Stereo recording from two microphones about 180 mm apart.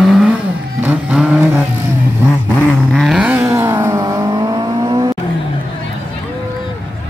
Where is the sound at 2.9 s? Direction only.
Centre (ahead or behind); by 5.1 s 20° right (ahead or behind).